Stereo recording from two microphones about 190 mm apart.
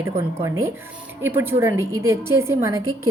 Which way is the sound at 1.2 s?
10° right (ahead or behind).